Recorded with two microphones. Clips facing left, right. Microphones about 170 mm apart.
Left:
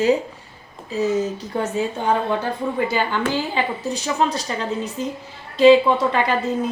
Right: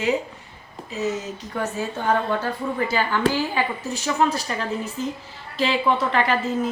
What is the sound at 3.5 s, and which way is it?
Speech, 20° left (ahead or behind).